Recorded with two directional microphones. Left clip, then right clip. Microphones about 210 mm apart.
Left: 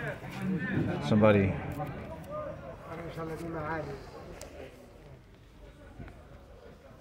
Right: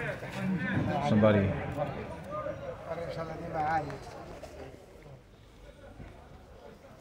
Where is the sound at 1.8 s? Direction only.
55° right (ahead or behind).